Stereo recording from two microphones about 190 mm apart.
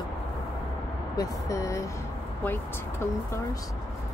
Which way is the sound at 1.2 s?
20° left (ahead or behind).